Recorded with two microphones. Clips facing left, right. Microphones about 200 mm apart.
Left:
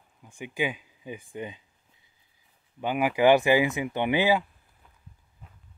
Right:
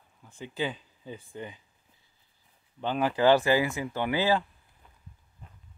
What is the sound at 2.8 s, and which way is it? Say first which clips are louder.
A man's voice: left 2 dB; 10° left (ahead or behind).